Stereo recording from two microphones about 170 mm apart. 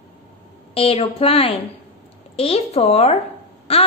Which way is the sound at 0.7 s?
35° left (ahead or behind).